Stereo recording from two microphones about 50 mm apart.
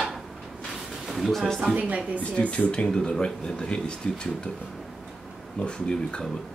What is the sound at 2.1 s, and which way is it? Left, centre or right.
Speech, left.